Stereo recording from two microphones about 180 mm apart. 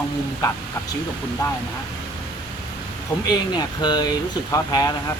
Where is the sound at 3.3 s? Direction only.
20° left (ahead or behind).